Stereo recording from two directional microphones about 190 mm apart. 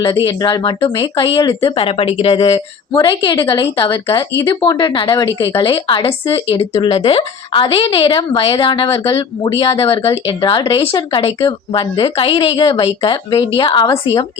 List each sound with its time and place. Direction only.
0.3 s speech: 25° left (ahead or behind)